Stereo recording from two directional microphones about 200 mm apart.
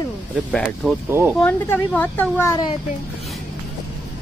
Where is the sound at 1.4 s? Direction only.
5° left (ahead or behind).